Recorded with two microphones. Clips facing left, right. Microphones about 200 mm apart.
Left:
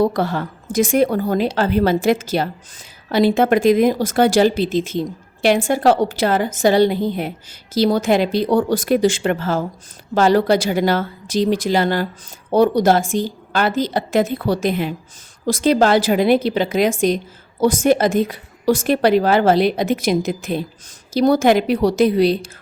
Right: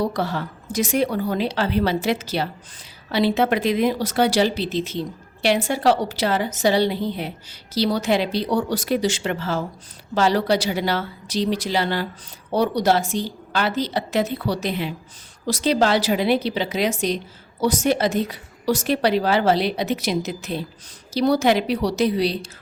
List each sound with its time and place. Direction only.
0.0 s speech: 50° left (ahead or behind)